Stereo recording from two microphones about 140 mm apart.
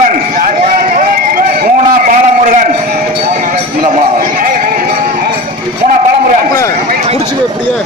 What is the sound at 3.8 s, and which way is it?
Sheep, 85° right.